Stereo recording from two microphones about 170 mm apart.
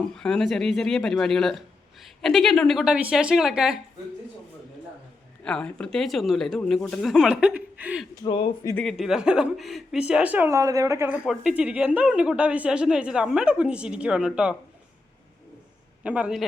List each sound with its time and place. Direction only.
0.0 s speech: 5° left (ahead or behind)
5.5 s speech: 5° left (ahead or behind)
8.2 s speech: 30° left (ahead or behind)
8.8 s speech: centre (ahead or behind); by 11.2 s 15° right (ahead or behind)
11.3 s speech: 5° right (ahead or behind)
16.0 s speech: 5° right (ahead or behind)